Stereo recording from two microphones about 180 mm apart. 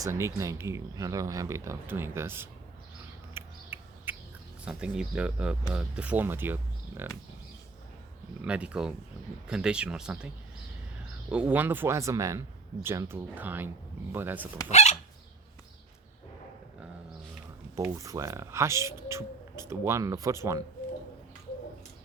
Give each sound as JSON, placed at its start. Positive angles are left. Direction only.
{"t": 0.0, "sound": "speech", "side_deg": -15}
{"t": 3.3, "sound": "a sound", "side_deg": -10}
{"t": 4.6, "sound": "speech", "side_deg": -5}
{"t": 8.4, "sound": "speech", "side_deg": -5}
{"t": 14.7, "sound": "chicken", "side_deg": 40}
{"t": 17.7, "sound": "speech", "side_deg": -15}